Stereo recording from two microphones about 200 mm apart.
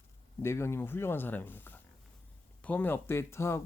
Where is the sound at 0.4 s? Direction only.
15° left (ahead or behind).